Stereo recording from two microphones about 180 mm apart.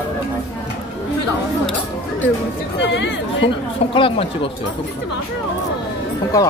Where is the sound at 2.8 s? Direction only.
90° left.